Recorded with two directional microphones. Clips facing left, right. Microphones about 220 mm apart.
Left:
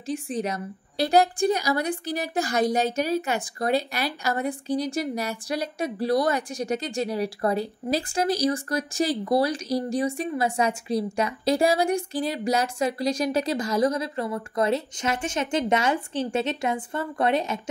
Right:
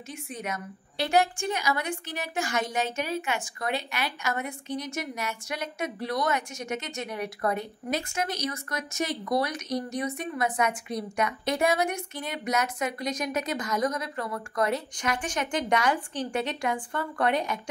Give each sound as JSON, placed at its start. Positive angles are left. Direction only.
{"t": 0.0, "sound": "a woman's voice", "side_deg": 35}